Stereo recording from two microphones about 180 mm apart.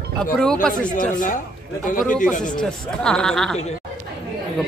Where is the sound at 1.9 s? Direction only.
50° left (ahead or behind).